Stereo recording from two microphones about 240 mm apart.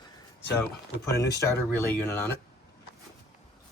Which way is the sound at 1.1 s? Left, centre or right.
Centre.